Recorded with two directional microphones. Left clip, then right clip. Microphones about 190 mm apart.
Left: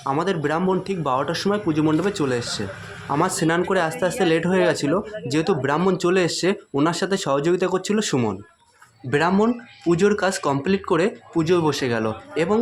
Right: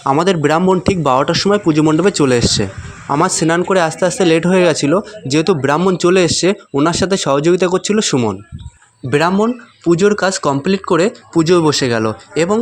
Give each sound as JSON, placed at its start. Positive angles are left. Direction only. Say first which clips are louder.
{"t": 0.0, "sound": "speech", "louder": "right 9 dB", "side_deg": -40}